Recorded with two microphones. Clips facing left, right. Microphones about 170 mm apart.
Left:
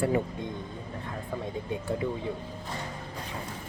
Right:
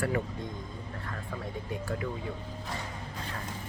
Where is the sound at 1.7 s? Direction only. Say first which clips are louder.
Left 4 dB; 25° left (ahead or behind).